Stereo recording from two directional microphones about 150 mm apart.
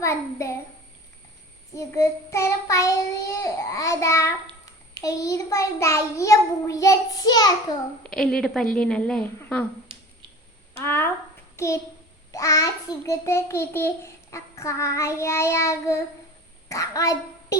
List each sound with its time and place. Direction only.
0.0 s a child's voice: 20° left (ahead or behind)
1.7 s a child's voice: 20° left (ahead or behind)
8.1 s a woman's voice: 5° left (ahead or behind)
10.8 s a woman's voice: 15° left (ahead or behind)